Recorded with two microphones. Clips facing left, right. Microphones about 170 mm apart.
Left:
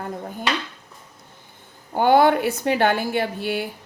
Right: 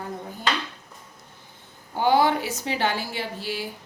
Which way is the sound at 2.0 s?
55° left (ahead or behind).